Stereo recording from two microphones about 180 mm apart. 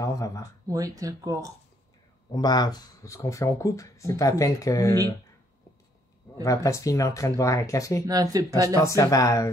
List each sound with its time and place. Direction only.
0.0 s speech: 20° left (ahead or behind)
0.7 s speech: 20° right (ahead or behind)
2.3 s speech: 20° left (ahead or behind)
6.4 s speech: 20° left (ahead or behind)
8.1 s speech: 20° right (ahead or behind)
8.8 s speech: 15° left (ahead or behind)